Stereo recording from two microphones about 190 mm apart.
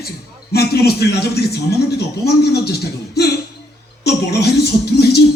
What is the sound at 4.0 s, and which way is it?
Speech, 55° left (ahead or behind).